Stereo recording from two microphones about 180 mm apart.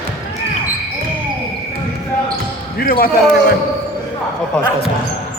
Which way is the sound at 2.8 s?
55° left (ahead or behind).